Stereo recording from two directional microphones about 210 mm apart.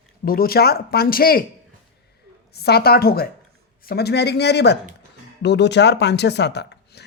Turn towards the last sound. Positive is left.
turn(degrees=55)  # may be behind; listen again after turning